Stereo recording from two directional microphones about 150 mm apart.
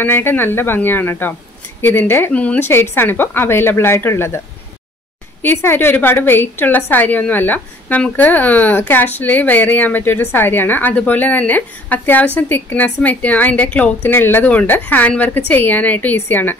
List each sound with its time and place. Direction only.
0.0 s a woman's voice: 15° left (ahead or behind)
5.4 s a woman's voice: 15° left (ahead or behind)